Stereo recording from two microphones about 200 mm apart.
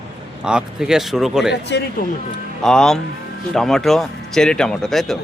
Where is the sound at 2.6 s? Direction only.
5° left (ahead or behind).